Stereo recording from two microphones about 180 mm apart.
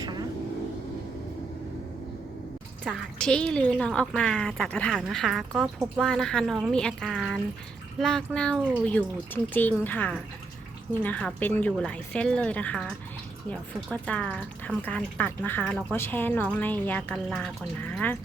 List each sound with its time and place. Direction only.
0.0 s vehicle: 20° right (ahead or behind)
3.2 s speech: 5° left (ahead or behind)